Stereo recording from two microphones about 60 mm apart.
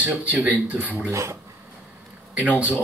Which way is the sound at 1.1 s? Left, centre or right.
Right.